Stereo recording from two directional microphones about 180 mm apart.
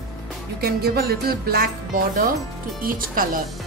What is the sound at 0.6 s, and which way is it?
A woman's voice, 60° right (ahead or behind).